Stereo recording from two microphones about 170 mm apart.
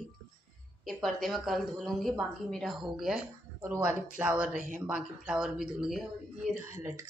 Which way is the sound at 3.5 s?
15° right (ahead or behind).